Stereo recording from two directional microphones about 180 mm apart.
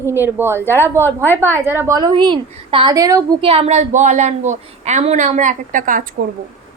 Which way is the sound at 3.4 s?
30° right (ahead or behind).